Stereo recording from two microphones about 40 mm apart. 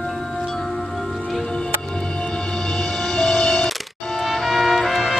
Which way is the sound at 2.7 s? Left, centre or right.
Centre.